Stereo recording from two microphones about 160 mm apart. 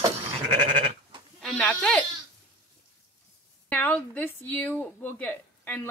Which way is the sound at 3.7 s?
10° left (ahead or behind).